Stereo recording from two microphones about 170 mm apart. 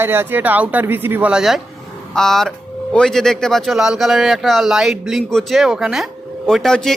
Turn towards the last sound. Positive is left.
turn(degrees=5)  # may be behind; listen again after turning